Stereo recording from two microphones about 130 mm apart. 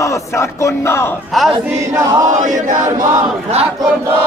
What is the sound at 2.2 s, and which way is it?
Chant, 75° right (ahead or behind).